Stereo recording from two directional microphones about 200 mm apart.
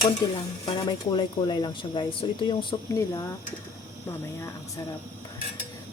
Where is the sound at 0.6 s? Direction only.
20° left (ahead or behind).